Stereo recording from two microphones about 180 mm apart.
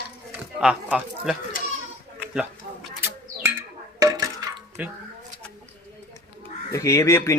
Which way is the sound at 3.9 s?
20° right (ahead or behind).